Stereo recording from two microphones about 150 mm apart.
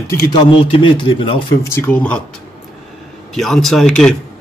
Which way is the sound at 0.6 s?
35° left (ahead or behind).